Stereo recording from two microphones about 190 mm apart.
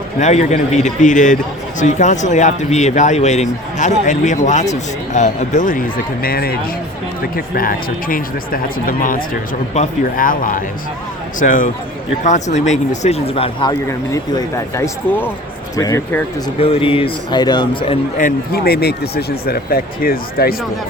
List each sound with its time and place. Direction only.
0.2 s speech: 35° left (ahead or behind)
6.2 s speech: 55° left (ahead or behind); by 16.2 s 15° left (ahead or behind)
16.6 s speech: 30° left (ahead or behind)
18.2 s speech: 50° left (ahead or behind)